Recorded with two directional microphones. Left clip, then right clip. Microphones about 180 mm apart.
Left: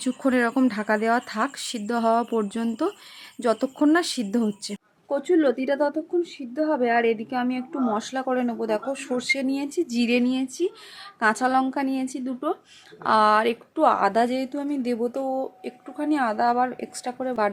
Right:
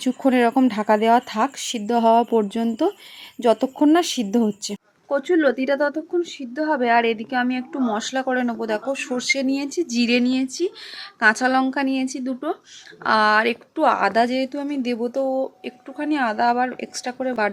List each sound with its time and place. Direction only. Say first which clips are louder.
0.0 s speech: right 4 dB; 10° right (ahead or behind)
5.0 s a woman's voice: right 2 dB; 10° left (ahead or behind)